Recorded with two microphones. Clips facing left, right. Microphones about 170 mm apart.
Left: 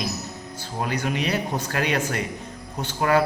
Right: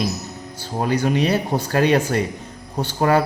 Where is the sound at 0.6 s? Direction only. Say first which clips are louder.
Right 6 dB; 35° right (ahead or behind).